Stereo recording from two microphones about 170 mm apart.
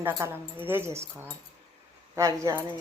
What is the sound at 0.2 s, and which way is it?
Speech, 15° right (ahead or behind).